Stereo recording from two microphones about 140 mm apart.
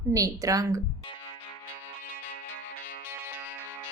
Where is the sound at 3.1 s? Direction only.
15° right (ahead or behind).